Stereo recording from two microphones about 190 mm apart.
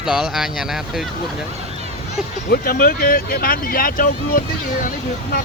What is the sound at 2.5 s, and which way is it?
Speech, 50° left (ahead or behind).